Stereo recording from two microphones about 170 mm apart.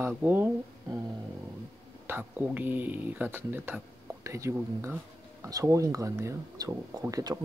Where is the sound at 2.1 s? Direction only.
10° right (ahead or behind).